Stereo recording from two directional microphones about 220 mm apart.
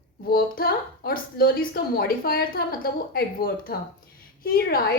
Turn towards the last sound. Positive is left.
turn(degrees=40)  # may be behind; listen again after turning